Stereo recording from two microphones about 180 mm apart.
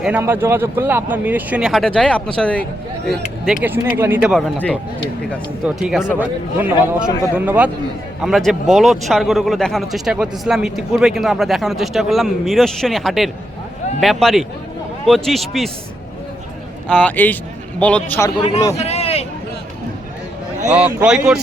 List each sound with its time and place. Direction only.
0.0 s speech: 10° right (ahead or behind); by 2.6 s 5° left (ahead or behind)
3.4 s speech: 5° right (ahead or behind)
4.5 s a man's voice: 10° left (ahead or behind)
5.6 s speech: 5° right (ahead or behind)
16.9 s a man's voice: 10° left (ahead or behind)
18.3 s speech: 35° left (ahead or behind)
18.8 s a sound: 35° left (ahead or behind)
20.7 s speech: 5° right (ahead or behind)